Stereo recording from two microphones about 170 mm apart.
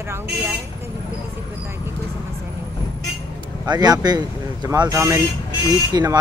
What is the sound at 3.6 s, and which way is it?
Speech, 25° right (ahead or behind).